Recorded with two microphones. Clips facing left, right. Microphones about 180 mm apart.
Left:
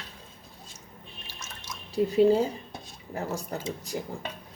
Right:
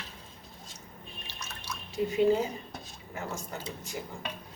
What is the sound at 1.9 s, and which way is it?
Speech, 35° left (ahead or behind).